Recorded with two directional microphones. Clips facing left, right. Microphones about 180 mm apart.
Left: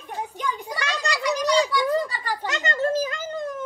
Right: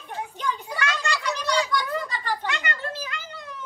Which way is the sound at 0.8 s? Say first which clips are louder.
Even; 35° left (ahead or behind).